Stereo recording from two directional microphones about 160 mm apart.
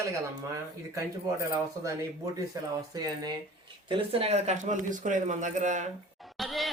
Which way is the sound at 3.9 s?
35° right (ahead or behind).